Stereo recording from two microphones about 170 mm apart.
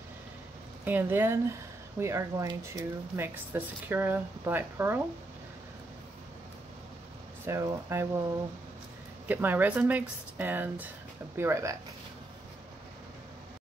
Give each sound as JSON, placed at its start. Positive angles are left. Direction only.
{"t": 0.8, "sound": "speech", "side_deg": -10}
{"t": 7.4, "sound": "speech", "side_deg": -15}
{"t": 9.3, "sound": "speech", "side_deg": -10}